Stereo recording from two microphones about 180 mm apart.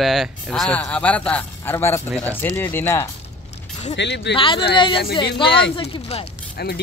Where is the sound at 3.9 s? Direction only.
75° left (ahead or behind).